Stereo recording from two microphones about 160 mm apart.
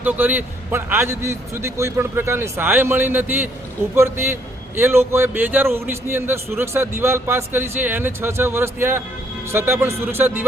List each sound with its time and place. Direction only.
0.0 s a man's voice: 10° right (ahead or behind)